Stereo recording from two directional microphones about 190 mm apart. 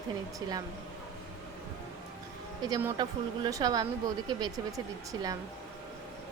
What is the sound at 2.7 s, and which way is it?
A woman's voice, 15° right (ahead or behind).